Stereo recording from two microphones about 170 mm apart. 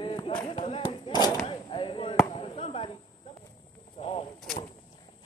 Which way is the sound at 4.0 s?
35° left (ahead or behind).